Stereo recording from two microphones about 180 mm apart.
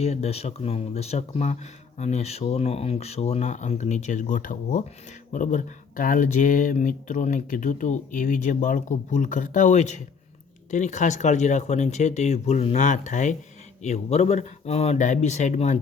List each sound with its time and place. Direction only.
0.0 s speech: 35° left (ahead or behind)